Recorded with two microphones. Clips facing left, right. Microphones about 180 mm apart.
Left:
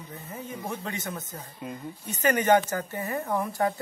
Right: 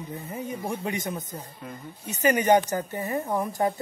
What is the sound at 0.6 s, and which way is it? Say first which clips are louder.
Speech: right 3 dB; 15° right (ahead or behind).